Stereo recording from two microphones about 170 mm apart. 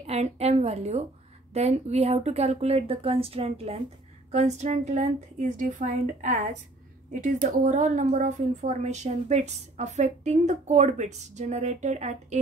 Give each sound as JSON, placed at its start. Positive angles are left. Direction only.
{"t": 0.0, "sound": "a woman's voice", "side_deg": -40}